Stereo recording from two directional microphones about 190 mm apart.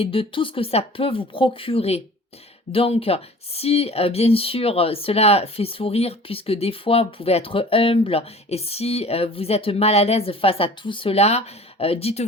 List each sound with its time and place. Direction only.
0.0 s speech: 30° left (ahead or behind)